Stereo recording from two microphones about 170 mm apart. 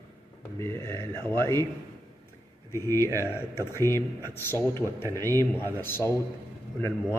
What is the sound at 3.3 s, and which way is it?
A man's voice, 15° left (ahead or behind).